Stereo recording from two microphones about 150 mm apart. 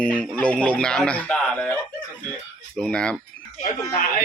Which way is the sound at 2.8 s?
5° left (ahead or behind).